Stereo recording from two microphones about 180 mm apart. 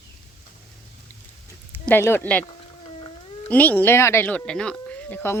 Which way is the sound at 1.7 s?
10° left (ahead or behind).